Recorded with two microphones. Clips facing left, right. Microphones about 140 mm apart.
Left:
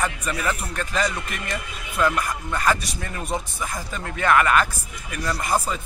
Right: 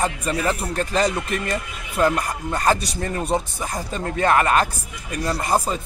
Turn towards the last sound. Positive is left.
turn(degrees=-35)  # may be behind; listen again after turning